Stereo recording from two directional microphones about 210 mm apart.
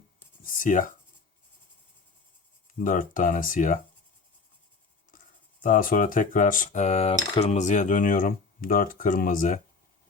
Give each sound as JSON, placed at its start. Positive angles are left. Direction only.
{"t": 0.4, "sound": "writing", "side_deg": 40}
{"t": 2.8, "sound": "speech", "side_deg": 40}
{"t": 5.1, "sound": "writing", "side_deg": 40}
{"t": 5.6, "sound": "speech", "side_deg": 40}